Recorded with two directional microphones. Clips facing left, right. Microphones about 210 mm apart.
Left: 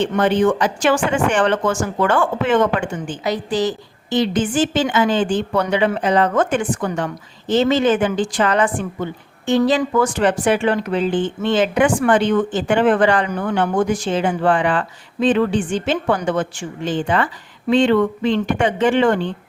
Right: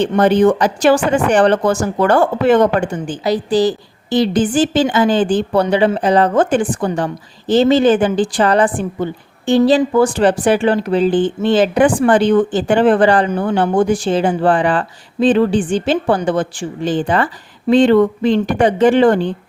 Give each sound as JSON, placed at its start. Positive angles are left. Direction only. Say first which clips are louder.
{"t": 0.0, "sound": "a woman's voice", "louder": "right 4 dB", "side_deg": -40}